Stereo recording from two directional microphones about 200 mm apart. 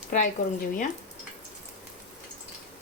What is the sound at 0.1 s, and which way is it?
Speech, 40° left (ahead or behind).